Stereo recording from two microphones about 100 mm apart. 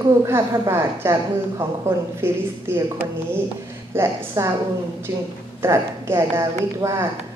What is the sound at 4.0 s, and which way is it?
Speech, 25° right (ahead or behind).